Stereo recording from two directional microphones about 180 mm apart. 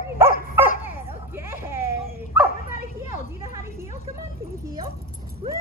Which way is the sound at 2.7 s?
40° left (ahead or behind).